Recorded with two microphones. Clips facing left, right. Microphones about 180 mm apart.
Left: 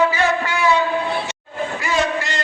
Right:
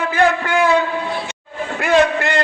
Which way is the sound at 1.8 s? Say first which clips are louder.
Right 8 dB; 60° right (ahead or behind).